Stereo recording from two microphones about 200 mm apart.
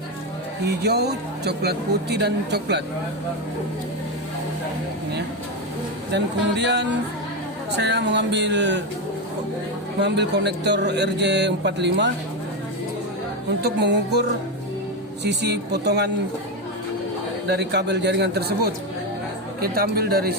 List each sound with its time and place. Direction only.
0.7 s speech: 55° right (ahead or behind)
6.1 s speech: 60° right (ahead or behind)
10.0 s speech: 60° right (ahead or behind)
13.6 s speech: 55° right (ahead or behind)
17.5 s speech: 55° right (ahead or behind)